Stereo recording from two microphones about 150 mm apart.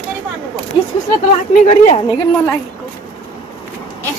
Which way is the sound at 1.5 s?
45° left (ahead or behind).